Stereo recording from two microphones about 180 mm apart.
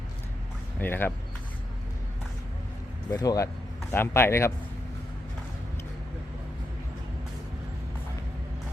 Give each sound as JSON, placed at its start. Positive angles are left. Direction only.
{"t": 0.8, "sound": "a man's voice", "side_deg": 10}
{"t": 3.1, "sound": "a man's voice", "side_deg": 20}